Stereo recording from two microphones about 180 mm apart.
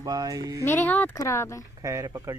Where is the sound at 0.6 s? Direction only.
10° left (ahead or behind).